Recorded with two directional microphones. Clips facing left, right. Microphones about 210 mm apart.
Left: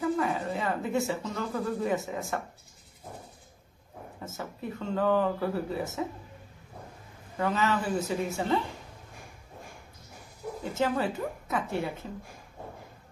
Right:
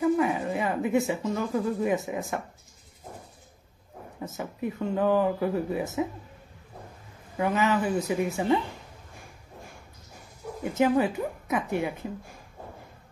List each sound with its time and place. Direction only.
0.2 s speech: 15° right (ahead or behind)
4.2 s speech: 15° right (ahead or behind)
7.3 s speech: 15° right (ahead or behind)
10.6 s speech: 15° right (ahead or behind)